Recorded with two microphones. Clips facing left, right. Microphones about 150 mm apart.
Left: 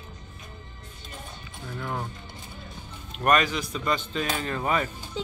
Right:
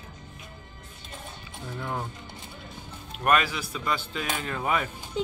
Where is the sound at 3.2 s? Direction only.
5° right (ahead or behind).